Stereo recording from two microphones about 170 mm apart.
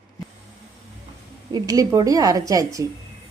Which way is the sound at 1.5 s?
20° right (ahead or behind).